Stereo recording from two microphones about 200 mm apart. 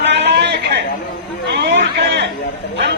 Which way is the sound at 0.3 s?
55° right (ahead or behind).